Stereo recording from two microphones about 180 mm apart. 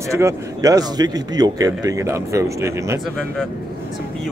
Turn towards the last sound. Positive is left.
turn(degrees=-15)  # may be behind; listen again after turning